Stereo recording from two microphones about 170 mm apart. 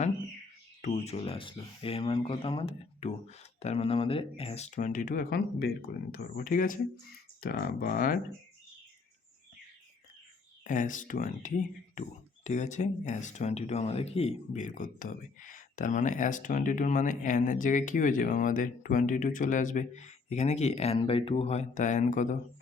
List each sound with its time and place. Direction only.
0.8 s speech: 40° left (ahead or behind)
10.6 s speech: 50° left (ahead or behind)